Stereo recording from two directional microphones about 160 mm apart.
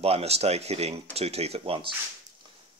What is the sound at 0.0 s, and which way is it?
Speech, 40° right (ahead or behind).